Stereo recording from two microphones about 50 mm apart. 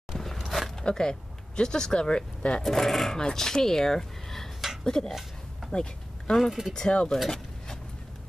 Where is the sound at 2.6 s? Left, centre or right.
Centre.